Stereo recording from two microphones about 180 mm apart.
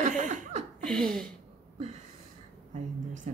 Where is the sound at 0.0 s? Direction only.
45° right (ahead or behind).